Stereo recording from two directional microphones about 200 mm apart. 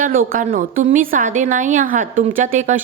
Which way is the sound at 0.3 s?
45° right (ahead or behind).